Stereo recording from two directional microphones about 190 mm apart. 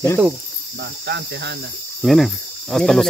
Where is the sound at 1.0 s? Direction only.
60° right (ahead or behind).